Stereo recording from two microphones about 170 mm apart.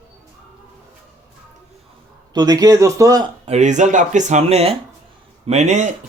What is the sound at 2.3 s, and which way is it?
Speech, 20° right (ahead or behind).